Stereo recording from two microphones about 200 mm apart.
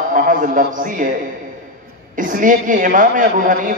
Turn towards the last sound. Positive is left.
turn(degrees=-45)  # may be behind; listen again after turning